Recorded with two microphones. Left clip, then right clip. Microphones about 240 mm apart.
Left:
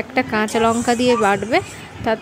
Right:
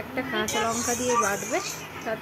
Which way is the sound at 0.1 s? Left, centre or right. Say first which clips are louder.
Left 8 dB; left.